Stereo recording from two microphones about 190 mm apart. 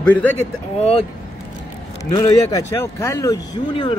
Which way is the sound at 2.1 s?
20° left (ahead or behind).